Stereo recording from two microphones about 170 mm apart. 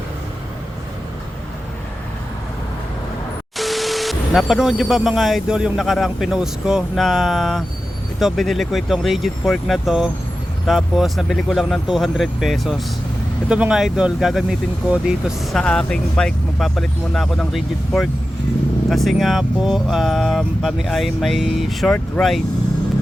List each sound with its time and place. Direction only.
3.6 s speech: centre (ahead or behind)
15.5 s speech: 5° left (ahead or behind)